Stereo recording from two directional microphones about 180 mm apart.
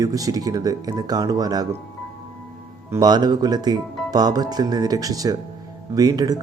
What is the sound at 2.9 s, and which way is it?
Speech, 20° right (ahead or behind).